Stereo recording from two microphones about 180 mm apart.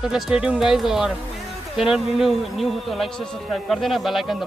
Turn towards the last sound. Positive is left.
turn(degrees=0)  # may be behind; listen again after turning